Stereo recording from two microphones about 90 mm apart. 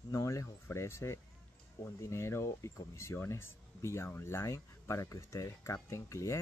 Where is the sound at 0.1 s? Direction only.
35° left (ahead or behind).